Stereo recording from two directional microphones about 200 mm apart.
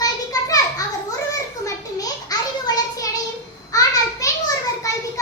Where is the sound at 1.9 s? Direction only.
20° left (ahead or behind).